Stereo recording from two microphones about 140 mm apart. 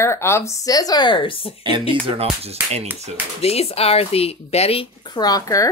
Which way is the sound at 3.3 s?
45° left (ahead or behind).